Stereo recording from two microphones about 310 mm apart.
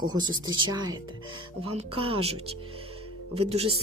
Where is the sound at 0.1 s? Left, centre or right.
Centre.